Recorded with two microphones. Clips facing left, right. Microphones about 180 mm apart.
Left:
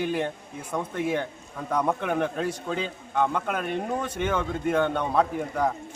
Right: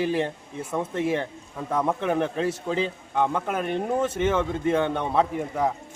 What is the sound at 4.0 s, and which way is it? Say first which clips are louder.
Speech: right 5 dB; 25° right (ahead or behind).